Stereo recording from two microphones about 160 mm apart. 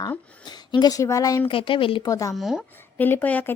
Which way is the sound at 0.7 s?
25° left (ahead or behind).